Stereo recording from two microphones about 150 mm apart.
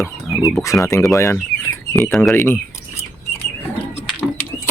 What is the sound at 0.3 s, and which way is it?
Speech, centre (ahead or behind).